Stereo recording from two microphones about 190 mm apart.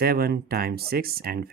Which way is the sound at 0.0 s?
55° right (ahead or behind).